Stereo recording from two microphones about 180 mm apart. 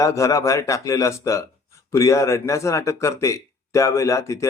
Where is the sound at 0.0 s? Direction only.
15° left (ahead or behind).